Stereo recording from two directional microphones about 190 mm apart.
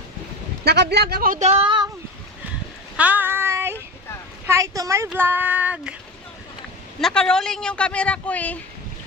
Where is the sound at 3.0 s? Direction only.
10° right (ahead or behind).